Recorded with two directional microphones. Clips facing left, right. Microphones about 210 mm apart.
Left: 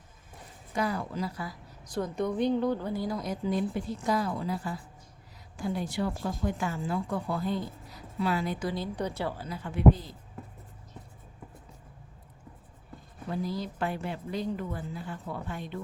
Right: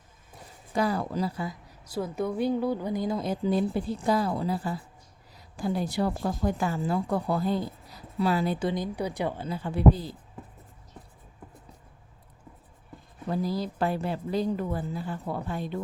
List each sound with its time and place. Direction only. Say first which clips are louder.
0.7 s speech: right 4 dB; 35° right (ahead or behind)
1.8 s a woman's voice: right 1 dB; 5° right (ahead or behind); by 8.7 s 30° right (ahead or behind)
8.7 s a woman's voice: right 2 dB; 15° right (ahead or behind); by 10.2 s 35° right (ahead or behind)
13.3 s speech: right 4 dB; 35° right (ahead or behind)